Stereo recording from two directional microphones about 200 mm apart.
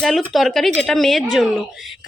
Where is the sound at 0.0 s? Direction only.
Centre (ahead or behind).